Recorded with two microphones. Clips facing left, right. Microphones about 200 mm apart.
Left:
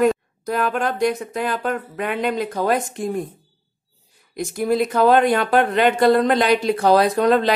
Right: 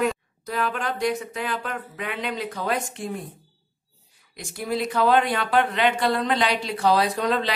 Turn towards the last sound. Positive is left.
turn(degrees=50)  # may be behind; listen again after turning